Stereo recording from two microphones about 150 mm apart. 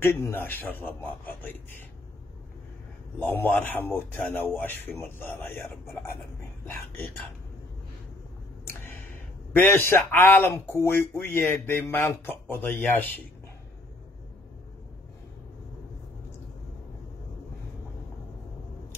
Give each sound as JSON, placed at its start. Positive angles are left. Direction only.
{"t": 0.0, "sound": "a man's voice", "side_deg": 15}
{"t": 3.2, "sound": "a man's voice", "side_deg": 10}
{"t": 8.6, "sound": "a sound", "side_deg": 15}
{"t": 9.5, "sound": "a man's voice", "side_deg": 15}